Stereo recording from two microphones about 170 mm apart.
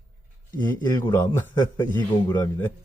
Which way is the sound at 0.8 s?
15° left (ahead or behind).